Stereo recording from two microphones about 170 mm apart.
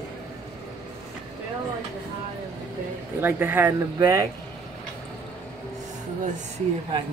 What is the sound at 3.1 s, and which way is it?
Speech, 10° right (ahead or behind).